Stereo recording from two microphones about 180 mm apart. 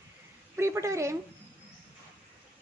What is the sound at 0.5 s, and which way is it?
Speech, 15° right (ahead or behind).